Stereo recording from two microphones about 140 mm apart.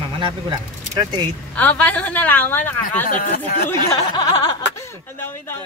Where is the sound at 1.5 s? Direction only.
10° left (ahead or behind).